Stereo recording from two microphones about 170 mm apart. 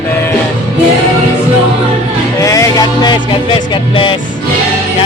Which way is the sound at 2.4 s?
20° left (ahead or behind).